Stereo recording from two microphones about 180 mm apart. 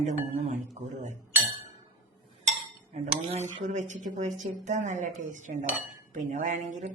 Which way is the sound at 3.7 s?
40° right (ahead or behind).